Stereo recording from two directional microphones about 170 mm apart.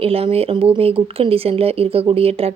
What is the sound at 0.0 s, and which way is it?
Speech, 35° right (ahead or behind).